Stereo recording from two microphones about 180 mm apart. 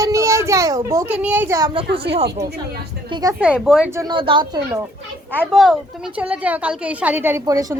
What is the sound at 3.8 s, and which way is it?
Speech, 15° right (ahead or behind).